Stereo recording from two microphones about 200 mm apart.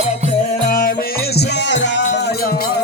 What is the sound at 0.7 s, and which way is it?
Music, 45° left (ahead or behind).